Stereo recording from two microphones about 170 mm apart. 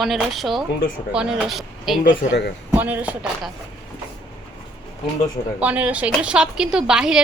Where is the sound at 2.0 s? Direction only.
55° left (ahead or behind).